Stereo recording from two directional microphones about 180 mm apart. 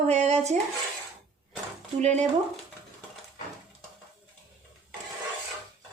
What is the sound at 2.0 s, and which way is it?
Speech, 40° right (ahead or behind).